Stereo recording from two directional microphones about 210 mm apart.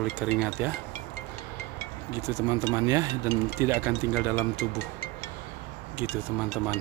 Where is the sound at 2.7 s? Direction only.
15° right (ahead or behind).